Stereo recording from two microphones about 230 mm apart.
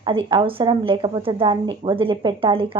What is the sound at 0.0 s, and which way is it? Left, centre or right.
Speech, right.